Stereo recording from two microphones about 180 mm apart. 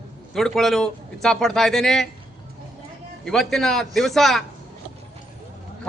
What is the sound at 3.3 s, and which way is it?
A man's voice, centre (ahead or behind).